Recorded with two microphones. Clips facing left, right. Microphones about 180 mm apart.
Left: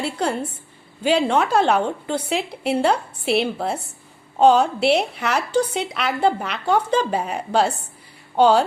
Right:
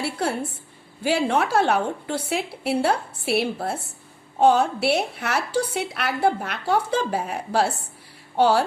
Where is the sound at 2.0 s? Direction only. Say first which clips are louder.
Left 2 dB; 5° right (ahead or behind).